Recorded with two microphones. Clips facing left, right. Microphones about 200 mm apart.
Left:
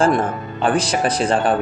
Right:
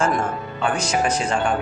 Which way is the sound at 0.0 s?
35° left (ahead or behind).